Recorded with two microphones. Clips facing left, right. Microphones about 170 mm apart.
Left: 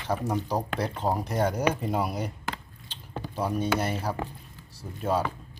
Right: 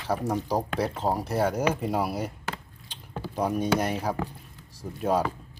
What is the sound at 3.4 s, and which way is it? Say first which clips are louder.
Speech: right 2 dB; 10° right (ahead or behind).